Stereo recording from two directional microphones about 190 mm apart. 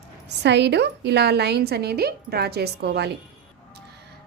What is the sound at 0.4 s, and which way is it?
A woman's voice, 65° right (ahead or behind).